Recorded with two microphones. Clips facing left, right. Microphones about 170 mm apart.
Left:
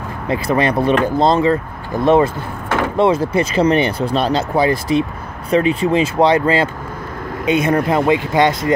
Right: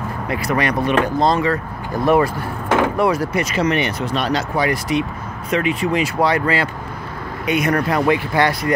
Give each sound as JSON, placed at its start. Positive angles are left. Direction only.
{"t": 0.3, "sound": "speech", "side_deg": 25}